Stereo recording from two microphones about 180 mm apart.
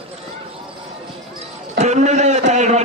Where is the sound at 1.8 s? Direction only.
40° right (ahead or behind).